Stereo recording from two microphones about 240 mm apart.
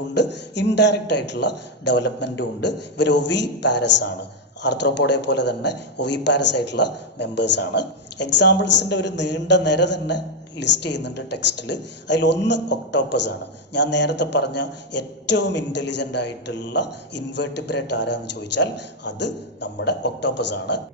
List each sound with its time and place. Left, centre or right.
0.1 s speech: left